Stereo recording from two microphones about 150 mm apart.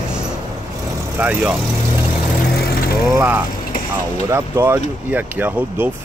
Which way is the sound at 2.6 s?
85° left.